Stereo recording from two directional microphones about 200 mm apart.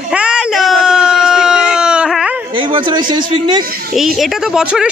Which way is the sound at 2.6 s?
25° right (ahead or behind).